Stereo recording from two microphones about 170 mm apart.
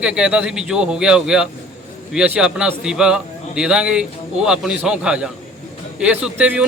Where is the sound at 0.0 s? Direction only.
5° right (ahead or behind).